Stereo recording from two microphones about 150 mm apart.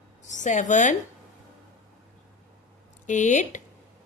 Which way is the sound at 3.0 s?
50° left (ahead or behind).